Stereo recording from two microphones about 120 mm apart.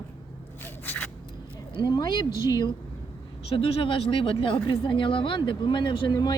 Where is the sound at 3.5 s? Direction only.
50° left (ahead or behind).